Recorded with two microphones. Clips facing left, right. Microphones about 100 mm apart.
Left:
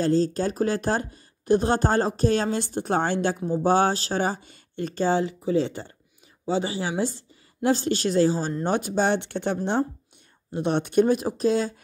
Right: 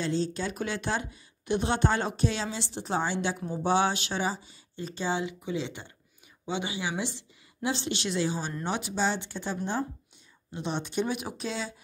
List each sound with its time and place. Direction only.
0.0 s speech: 40° left (ahead or behind)
3.3 s speech: 15° left (ahead or behind)
3.6 s speech: 45° left (ahead or behind)